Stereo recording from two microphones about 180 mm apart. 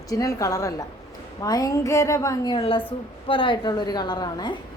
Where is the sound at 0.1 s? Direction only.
20° left (ahead or behind).